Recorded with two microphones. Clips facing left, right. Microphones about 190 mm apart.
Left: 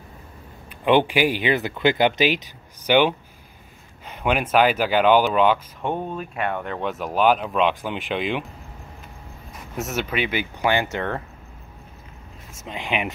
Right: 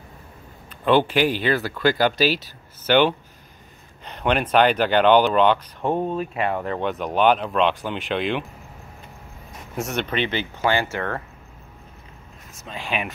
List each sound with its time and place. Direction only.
0.8 s speech: 15° left (ahead or behind)
9.8 s speech: 5° left (ahead or behind); by 11.2 s 20° left (ahead or behind)
12.5 s speech: 20° left (ahead or behind)